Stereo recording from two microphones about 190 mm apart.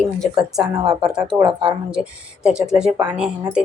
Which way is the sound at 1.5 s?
5° right (ahead or behind).